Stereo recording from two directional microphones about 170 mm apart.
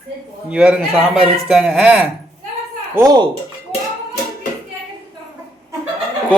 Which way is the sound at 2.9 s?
25° right (ahead or behind).